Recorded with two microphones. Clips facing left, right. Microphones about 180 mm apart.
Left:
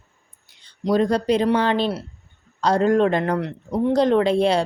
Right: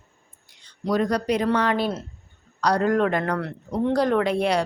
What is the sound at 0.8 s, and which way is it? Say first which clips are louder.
A woman's voice: left 3 dB; 25° left (ahead or behind).